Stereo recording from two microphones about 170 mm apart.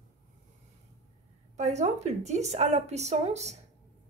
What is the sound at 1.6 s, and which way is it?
Speech, 40° right (ahead or behind).